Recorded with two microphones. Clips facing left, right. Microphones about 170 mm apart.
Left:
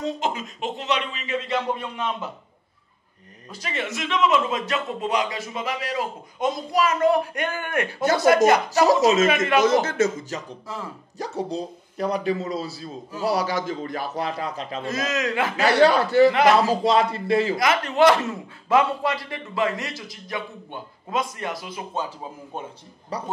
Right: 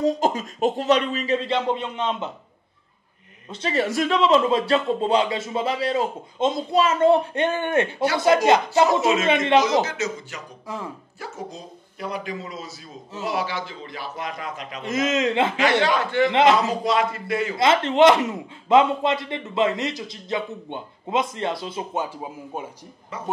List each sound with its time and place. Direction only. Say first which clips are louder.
0.0 s speech: right 5 dB; 40° right (ahead or behind)
3.4 s a man's voice: right 7 dB; 30° right (ahead or behind)
8.8 s a man's voice: left 2 dB; 40° left (ahead or behind)
9.3 s a man's voice: right 3 dB; 25° right (ahead or behind)
9.8 s speech: left 6 dB; 50° left (ahead or behind)
10.7 s speech: right 2 dB; 15° right (ahead or behind)
11.1 s a man's voice: left 10 dB; 35° left (ahead or behind)
14.8 s a man's voice: right 4 dB; 20° right (ahead or behind)
15.5 s a man's voice: left 3 dB; 40° left (ahead or behind)
16.3 s a man's voice: even; 20° right (ahead or behind)
16.6 s a man's voice: left 2 dB; 35° left (ahead or behind)
17.6 s a man's voice: right 3 dB; 25° right (ahead or behind)
23.1 s a man's voice: left 4 dB; 35° left (ahead or behind)